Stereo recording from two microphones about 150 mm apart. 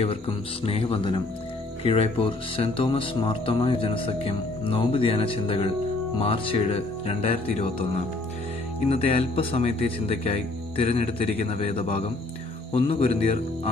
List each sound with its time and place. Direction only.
0.0 s speech: 40° left (ahead or behind)
8.8 s speech: 40° left (ahead or behind)